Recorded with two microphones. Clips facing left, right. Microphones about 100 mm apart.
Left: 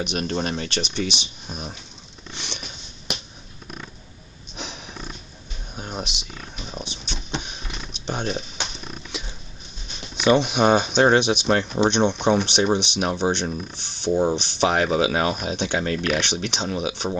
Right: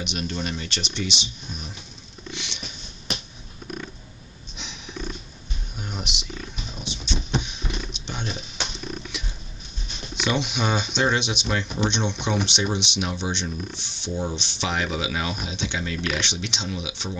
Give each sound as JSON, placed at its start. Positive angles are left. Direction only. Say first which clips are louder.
{"t": 0.0, "sound": "speech", "louder": "left 4 dB", "side_deg": 45}
{"t": 2.3, "sound": "patter", "louder": "left 2 dB", "side_deg": 40}
{"t": 5.8, "sound": "a sound", "louder": "left 3 dB", "side_deg": 35}
{"t": 6.8, "sound": "a sound", "louder": "right 6 dB", "side_deg": 45}
{"t": 7.4, "sound": "wild animals", "louder": "right 3 dB", "side_deg": 45}
{"t": 10.1, "sound": "speech", "louder": "left 7 dB", "side_deg": 45}